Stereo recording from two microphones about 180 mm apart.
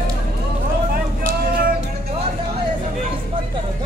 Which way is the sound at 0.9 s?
55° right (ahead or behind).